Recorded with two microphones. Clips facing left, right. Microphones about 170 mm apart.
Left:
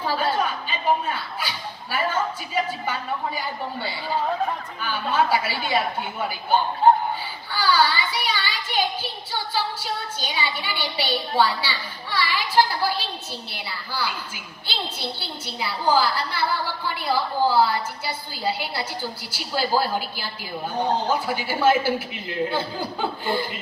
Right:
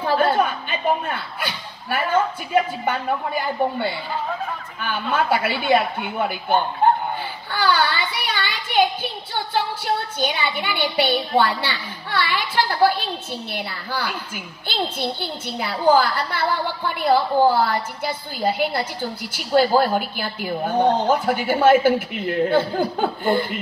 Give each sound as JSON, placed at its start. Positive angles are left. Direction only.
{"t": 0.0, "sound": "a woman's voice", "side_deg": -55}